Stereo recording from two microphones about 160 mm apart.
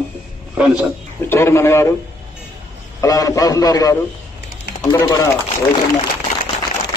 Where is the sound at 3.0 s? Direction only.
20° left (ahead or behind).